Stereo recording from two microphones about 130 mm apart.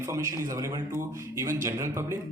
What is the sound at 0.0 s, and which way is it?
Speech, 20° right (ahead or behind).